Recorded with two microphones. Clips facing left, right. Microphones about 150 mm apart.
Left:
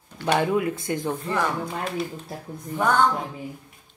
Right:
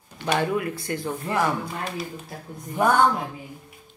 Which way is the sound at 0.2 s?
15° left (ahead or behind).